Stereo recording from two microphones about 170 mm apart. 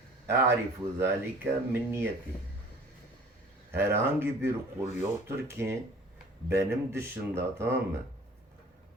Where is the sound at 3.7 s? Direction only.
15° right (ahead or behind).